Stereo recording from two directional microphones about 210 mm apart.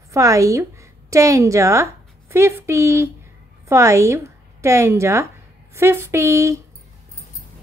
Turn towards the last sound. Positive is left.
turn(degrees=-15)  # may be behind; listen again after turning